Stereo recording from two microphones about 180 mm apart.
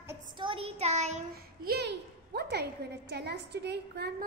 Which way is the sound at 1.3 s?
60° right (ahead or behind).